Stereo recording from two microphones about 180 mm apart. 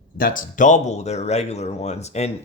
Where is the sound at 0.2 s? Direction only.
50° left (ahead or behind).